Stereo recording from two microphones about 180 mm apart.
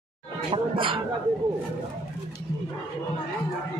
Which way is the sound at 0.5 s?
30° right (ahead or behind).